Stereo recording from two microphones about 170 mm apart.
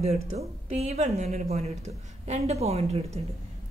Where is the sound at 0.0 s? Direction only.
40° right (ahead or behind).